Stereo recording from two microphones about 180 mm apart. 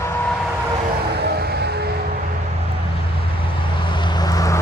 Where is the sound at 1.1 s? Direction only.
65° right (ahead or behind).